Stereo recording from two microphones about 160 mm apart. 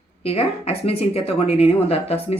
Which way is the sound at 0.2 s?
40° left (ahead or behind).